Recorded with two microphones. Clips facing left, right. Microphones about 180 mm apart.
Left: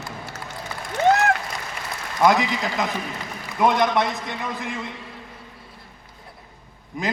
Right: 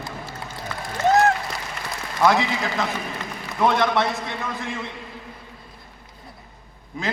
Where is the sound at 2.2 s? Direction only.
15° left (ahead or behind).